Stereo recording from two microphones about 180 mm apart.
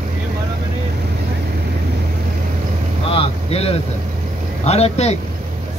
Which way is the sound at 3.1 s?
35° left (ahead or behind).